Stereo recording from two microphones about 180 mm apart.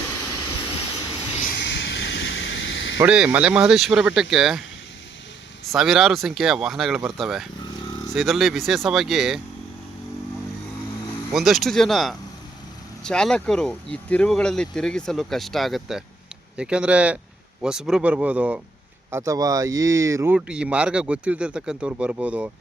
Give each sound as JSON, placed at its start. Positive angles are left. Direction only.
{"t": 1.5, "sound": "vehicle", "side_deg": 70}
{"t": 3.0, "sound": "speech", "side_deg": -10}
{"t": 5.6, "sound": "speech", "side_deg": 0}
{"t": 11.3, "sound": "speech", "side_deg": 0}